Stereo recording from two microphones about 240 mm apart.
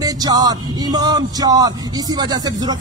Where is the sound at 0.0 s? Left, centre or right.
Centre.